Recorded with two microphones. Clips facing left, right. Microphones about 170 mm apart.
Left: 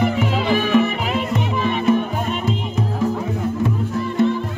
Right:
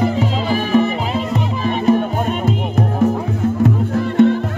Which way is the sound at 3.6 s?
65° right (ahead or behind).